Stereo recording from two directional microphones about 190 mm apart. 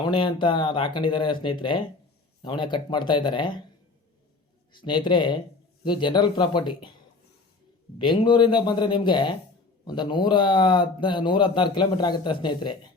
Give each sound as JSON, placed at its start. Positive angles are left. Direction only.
{"t": 0.0, "sound": "speech", "side_deg": 25}
{"t": 4.7, "sound": "speech", "side_deg": 25}
{"t": 7.9, "sound": "speech", "side_deg": 25}